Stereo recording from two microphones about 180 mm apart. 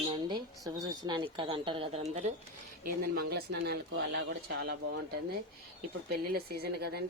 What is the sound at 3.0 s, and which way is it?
Speech, 60° right (ahead or behind).